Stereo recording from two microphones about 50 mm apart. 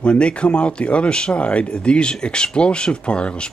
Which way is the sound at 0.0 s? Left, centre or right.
Left.